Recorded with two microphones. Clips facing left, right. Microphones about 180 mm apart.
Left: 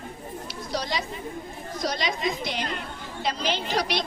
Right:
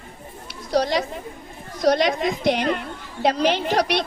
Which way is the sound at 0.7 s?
65° right (ahead or behind).